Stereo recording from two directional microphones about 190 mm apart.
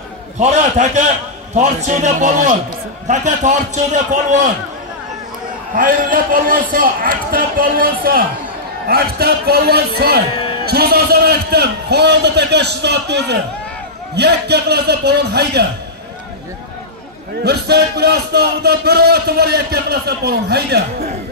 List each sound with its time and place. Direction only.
0.4 s a man's voice: 40° right (ahead or behind)
5.8 s a man's voice: 45° right (ahead or behind)
17.4 s a man's voice: 60° right (ahead or behind)